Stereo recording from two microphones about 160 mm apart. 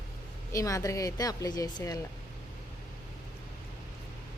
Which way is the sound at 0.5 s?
20° left (ahead or behind).